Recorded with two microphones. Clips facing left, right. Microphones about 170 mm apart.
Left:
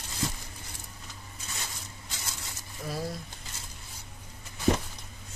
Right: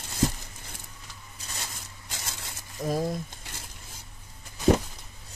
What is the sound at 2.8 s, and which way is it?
Frying, 45° right (ahead or behind).